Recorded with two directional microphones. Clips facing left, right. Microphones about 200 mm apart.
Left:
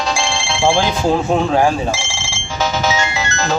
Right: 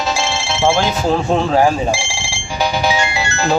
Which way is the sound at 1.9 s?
15° right (ahead or behind).